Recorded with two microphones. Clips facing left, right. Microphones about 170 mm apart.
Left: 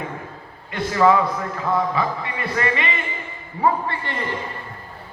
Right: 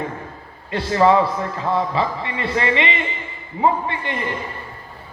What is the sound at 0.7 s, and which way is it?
A man's voice, 30° right (ahead or behind).